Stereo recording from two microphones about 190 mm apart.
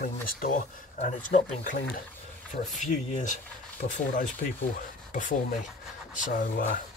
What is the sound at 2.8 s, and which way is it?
Speech, 40° left (ahead or behind).